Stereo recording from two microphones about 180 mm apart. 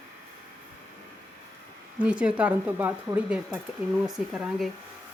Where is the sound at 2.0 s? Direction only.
5° right (ahead or behind).